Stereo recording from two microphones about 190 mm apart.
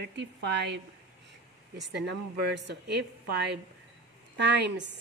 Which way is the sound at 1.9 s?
65° right (ahead or behind).